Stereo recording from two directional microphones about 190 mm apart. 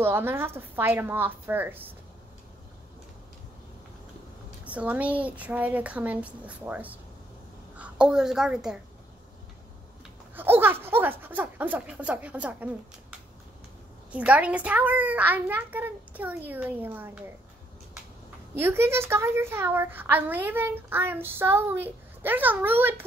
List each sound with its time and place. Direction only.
0.0 s a woman's voice: 10° right (ahead or behind)
4.6 s a woman's voice: 5° right (ahead or behind)
10.3 s a woman's voice: 10° right (ahead or behind)
14.1 s a woman's voice: 5° right (ahead or behind)
18.5 s a woman's voice: 10° right (ahead or behind)